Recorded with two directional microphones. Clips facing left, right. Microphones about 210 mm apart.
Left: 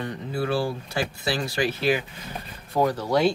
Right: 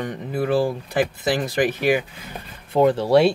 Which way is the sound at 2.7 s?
25° right (ahead or behind).